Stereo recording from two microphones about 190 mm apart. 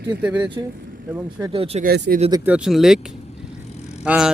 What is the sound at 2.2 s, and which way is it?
Speech, 25° right (ahead or behind).